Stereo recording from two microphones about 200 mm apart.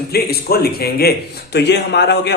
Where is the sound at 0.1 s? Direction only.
50° left (ahead or behind).